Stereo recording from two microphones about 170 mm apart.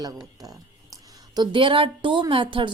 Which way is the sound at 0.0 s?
20° right (ahead or behind).